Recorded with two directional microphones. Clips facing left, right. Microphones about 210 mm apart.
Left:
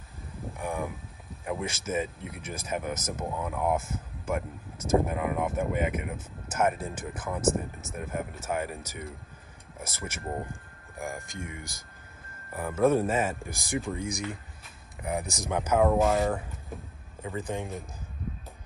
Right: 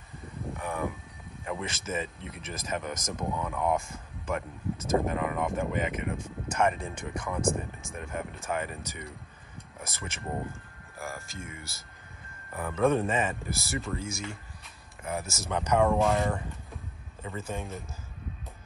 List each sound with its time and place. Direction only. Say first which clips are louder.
0.6 s a sound: left 2 dB; 15° left (ahead or behind)
1.4 s speech: left 2 dB; 5° left (ahead or behind)
17.4 s speech: left 3 dB; 15° left (ahead or behind)